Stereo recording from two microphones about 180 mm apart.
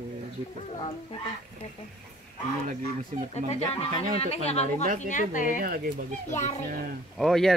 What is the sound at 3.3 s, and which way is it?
Speech, 35° left (ahead or behind).